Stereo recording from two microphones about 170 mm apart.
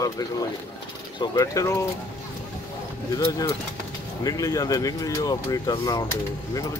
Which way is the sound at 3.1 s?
25° left (ahead or behind).